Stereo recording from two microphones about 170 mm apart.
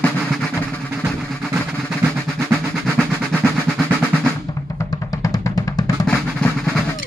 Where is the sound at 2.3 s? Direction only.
10° right (ahead or behind).